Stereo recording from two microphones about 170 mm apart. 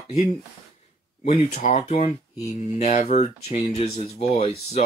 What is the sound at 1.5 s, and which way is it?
Speech, 45° left (ahead or behind).